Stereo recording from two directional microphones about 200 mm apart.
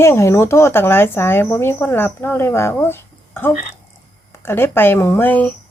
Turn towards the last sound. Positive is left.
turn(degrees=10)  # may be behind; listen again after turning